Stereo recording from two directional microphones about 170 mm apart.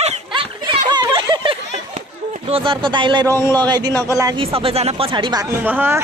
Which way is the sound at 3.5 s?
25° right (ahead or behind).